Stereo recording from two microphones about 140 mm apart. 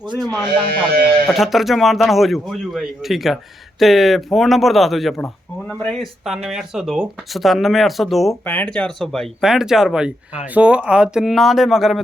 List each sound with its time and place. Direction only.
0.7 s speech: 90° right
1.3 s speech: centre (ahead or behind)